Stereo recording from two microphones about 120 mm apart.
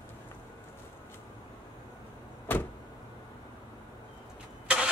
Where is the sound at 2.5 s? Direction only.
15° left (ahead or behind).